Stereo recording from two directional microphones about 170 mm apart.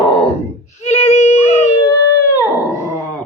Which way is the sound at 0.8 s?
40° left (ahead or behind).